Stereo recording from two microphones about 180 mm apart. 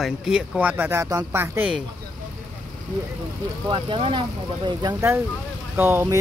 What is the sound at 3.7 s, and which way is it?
Speech, 30° right (ahead or behind).